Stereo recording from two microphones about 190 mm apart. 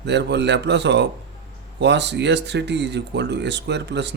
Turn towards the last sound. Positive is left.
turn(degrees=-65)  # may be behind; listen again after turning